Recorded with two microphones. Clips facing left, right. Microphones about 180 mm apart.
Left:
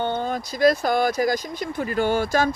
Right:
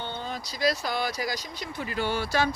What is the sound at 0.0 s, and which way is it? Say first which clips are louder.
Speech: left 10 dB; 50° left (ahead or behind).